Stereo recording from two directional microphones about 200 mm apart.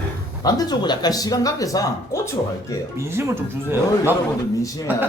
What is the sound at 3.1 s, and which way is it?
Speech, 15° right (ahead or behind).